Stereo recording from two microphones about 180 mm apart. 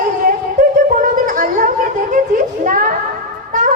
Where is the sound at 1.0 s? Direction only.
45° right (ahead or behind).